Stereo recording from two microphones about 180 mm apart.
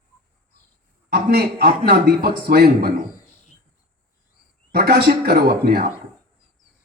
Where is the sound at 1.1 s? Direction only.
60° right (ahead or behind).